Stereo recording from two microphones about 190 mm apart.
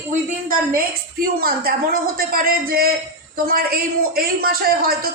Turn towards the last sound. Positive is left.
turn(degrees=-50)  # may be behind; listen again after turning